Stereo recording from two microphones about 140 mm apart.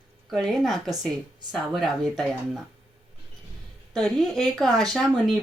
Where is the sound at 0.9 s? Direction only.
25° right (ahead or behind).